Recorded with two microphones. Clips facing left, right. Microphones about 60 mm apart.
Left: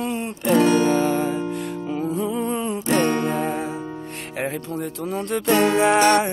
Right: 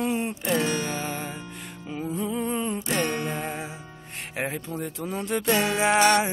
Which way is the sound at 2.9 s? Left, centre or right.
Left.